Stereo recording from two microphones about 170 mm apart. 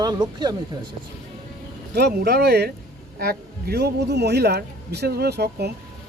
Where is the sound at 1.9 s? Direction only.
70° right (ahead or behind).